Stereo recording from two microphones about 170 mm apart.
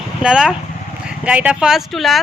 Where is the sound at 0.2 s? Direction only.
5° right (ahead or behind).